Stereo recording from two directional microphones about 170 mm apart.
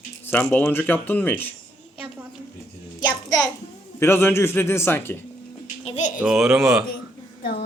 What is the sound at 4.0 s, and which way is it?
Speech, 15° left (ahead or behind).